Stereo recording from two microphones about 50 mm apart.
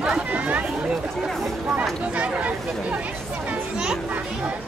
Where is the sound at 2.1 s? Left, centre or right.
Right.